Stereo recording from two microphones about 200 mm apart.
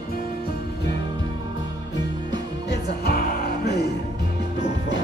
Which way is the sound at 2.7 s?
50° left (ahead or behind).